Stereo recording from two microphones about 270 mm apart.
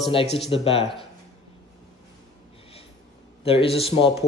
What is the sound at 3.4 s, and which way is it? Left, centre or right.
Speech, left.